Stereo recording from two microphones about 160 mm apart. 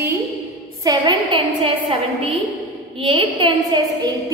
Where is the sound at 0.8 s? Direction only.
25° right (ahead or behind).